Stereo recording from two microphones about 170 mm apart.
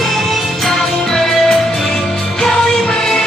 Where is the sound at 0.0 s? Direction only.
Centre (ahead or behind).